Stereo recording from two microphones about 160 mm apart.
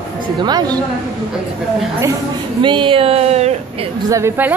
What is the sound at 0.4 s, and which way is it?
Speech, 25° right (ahead or behind).